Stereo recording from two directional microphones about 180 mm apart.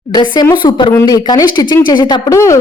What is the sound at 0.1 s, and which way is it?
Speech, 25° left (ahead or behind).